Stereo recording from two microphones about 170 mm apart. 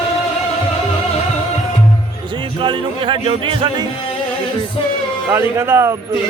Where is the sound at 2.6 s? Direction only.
30° right (ahead or behind).